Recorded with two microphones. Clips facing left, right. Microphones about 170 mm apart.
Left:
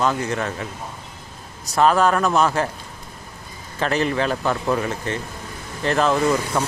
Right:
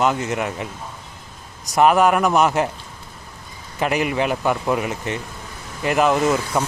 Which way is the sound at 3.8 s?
15° right (ahead or behind).